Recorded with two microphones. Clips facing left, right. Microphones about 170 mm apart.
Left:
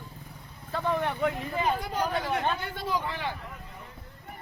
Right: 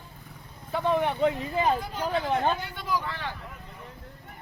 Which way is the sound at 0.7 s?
20° right (ahead or behind).